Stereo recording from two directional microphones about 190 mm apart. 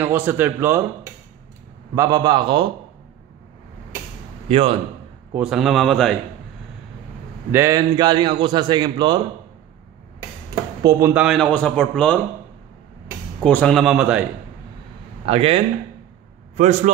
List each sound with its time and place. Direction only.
0.0 s speech: 10° right (ahead or behind)
2.0 s a man's voice: 20° right (ahead or behind)
4.5 s a man's voice: 30° right (ahead or behind)
5.3 s a man's voice: 5° right (ahead or behind)
7.5 s a man's voice: 15° right (ahead or behind)
10.5 s speech: 20° right (ahead or behind); by 12.2 s 5° left (ahead or behind)
13.4 s a man's voice: 5° left (ahead or behind)
15.2 s a man's voice: 30° right (ahead or behind)